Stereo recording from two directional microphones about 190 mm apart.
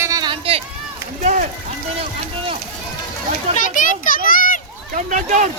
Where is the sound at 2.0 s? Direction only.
30° right (ahead or behind).